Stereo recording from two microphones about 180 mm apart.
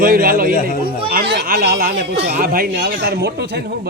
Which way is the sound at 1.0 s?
65° right (ahead or behind).